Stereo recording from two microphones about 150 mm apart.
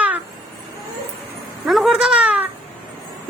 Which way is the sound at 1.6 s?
Centre (ahead or behind).